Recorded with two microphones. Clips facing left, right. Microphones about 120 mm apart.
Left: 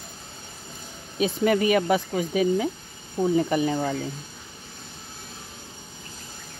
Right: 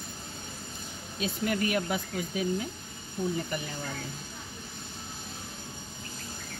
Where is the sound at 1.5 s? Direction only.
90° left.